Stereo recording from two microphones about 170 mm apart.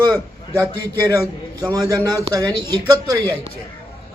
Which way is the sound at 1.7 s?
20° right (ahead or behind).